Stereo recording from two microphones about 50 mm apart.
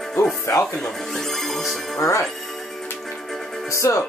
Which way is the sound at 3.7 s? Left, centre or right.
Left.